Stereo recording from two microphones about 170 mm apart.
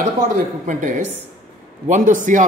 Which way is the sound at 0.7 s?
50° right (ahead or behind).